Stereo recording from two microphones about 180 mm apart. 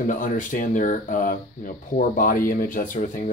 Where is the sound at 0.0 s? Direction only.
45° left (ahead or behind).